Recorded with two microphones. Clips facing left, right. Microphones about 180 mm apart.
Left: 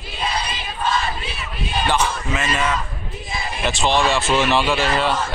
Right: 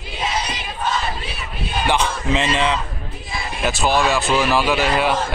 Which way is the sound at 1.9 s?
20° right (ahead or behind).